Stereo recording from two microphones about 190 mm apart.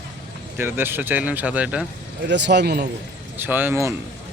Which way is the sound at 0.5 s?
10° right (ahead or behind).